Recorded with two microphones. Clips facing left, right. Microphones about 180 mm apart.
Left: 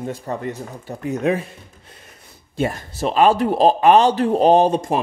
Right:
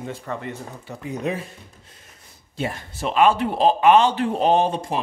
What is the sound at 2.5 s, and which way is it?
A man's voice, 45° left (ahead or behind).